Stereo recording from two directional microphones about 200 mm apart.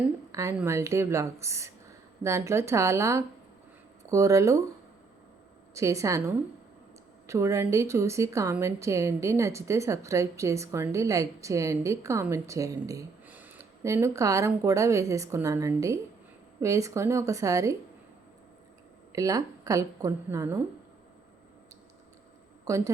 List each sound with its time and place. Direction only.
0.3 s a woman's voice: 15° right (ahead or behind)
5.7 s a woman's voice: 15° right (ahead or behind)
19.1 s a woman's voice: 15° right (ahead or behind)
22.6 s a woman's voice: 15° right (ahead or behind)